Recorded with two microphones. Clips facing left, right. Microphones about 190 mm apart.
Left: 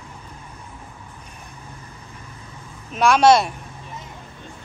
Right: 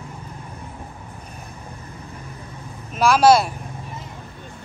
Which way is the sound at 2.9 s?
Centre (ahead or behind).